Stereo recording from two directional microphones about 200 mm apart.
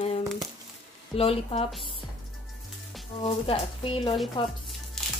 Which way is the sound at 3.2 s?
25° left (ahead or behind).